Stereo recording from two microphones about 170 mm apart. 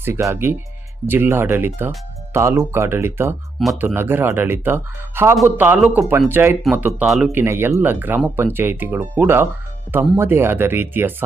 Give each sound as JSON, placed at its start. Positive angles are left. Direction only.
{"t": 0.0, "sound": "speech", "side_deg": -15}